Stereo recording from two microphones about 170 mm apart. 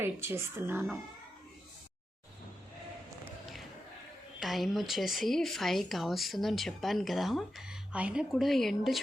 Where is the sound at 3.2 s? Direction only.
Centre (ahead or behind).